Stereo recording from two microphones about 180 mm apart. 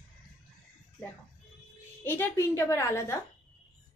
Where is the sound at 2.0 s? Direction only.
15° left (ahead or behind).